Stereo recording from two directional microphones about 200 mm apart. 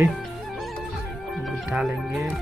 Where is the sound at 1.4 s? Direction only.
5° right (ahead or behind).